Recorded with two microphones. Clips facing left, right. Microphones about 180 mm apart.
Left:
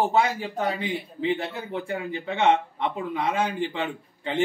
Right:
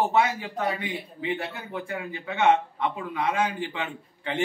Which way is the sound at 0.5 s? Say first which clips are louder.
Left 2 dB; 25° left (ahead or behind).